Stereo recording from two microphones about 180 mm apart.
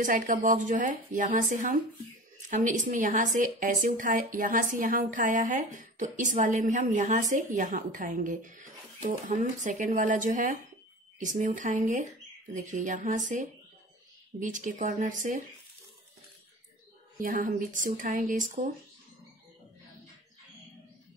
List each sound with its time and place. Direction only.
0.0 s speech: 50° right (ahead or behind)
17.2 s speech: 50° right (ahead or behind)